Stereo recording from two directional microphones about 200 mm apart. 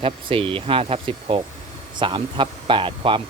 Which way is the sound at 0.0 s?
25° right (ahead or behind).